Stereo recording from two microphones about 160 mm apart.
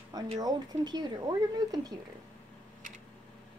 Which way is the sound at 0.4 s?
25° right (ahead or behind).